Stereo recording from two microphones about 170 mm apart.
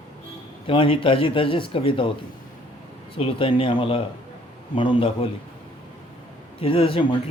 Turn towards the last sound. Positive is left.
turn(degrees=30)  # may be behind; listen again after turning